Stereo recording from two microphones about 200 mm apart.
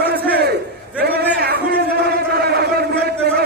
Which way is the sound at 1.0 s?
50° right (ahead or behind).